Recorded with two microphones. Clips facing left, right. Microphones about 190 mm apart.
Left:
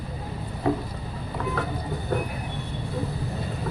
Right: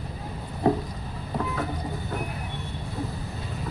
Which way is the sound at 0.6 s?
35° right (ahead or behind).